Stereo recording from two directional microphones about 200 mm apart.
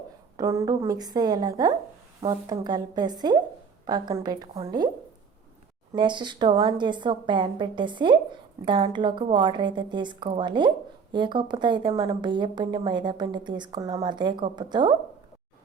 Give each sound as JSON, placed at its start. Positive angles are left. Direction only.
{"t": 0.3, "sound": "a woman's voice", "side_deg": -15}
{"t": 5.9, "sound": "a woman's voice", "side_deg": -25}